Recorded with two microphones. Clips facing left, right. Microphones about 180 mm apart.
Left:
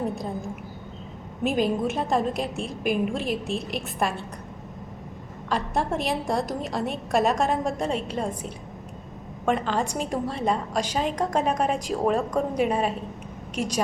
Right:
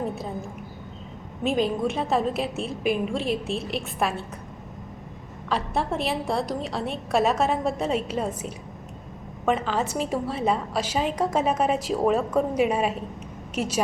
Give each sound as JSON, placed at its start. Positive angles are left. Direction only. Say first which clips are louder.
{"t": 1.5, "sound": "a woman's voice", "louder": "even", "side_deg": 0}
{"t": 5.5, "sound": "a woman's voice", "louder": "even", "side_deg": 0}
{"t": 9.5, "sound": "a woman's voice", "louder": "even", "side_deg": -5}